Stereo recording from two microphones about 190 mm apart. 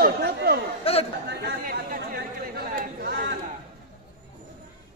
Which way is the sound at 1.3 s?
55° right (ahead or behind).